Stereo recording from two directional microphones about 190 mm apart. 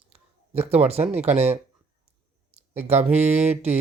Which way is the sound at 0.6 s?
35° right (ahead or behind).